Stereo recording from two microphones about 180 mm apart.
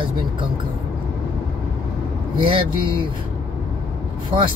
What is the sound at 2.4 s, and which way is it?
Speech, 30° right (ahead or behind).